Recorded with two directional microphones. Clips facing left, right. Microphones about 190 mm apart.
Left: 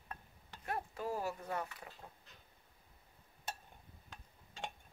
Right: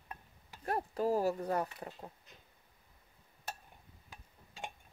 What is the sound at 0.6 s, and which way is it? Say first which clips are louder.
Speech: right 7 dB; 40° right (ahead or behind).